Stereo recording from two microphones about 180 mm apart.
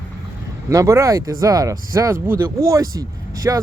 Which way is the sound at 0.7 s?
15° right (ahead or behind).